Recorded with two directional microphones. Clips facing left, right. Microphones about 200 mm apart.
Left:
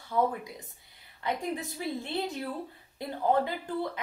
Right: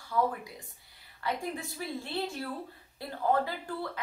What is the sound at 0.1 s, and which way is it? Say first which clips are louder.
A woman's voice: left 2 dB; 20° left (ahead or behind).